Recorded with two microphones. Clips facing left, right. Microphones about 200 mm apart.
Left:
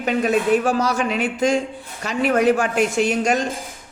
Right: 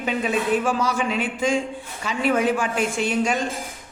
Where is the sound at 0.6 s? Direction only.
40° left (ahead or behind).